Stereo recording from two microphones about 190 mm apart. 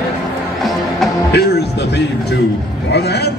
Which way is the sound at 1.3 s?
60° left (ahead or behind).